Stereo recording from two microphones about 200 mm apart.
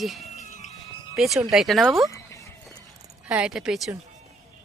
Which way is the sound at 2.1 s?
15° left (ahead or behind).